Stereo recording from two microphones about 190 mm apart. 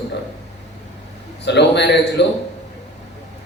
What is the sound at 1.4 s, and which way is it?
Speech, 65° left (ahead or behind).